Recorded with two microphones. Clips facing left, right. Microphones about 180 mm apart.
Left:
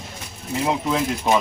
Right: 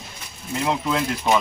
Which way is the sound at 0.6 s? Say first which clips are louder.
Left 1 dB; 10° left (ahead or behind).